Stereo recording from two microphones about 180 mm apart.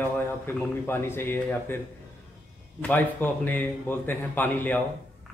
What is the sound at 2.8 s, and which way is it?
A man's voice, 10° left (ahead or behind).